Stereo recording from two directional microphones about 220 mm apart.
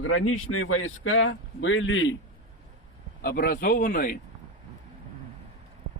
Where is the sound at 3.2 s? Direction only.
45° left (ahead or behind).